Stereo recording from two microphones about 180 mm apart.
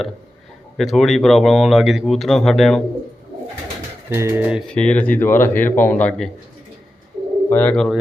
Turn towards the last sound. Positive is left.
turn(degrees=5)  # may be behind; listen again after turning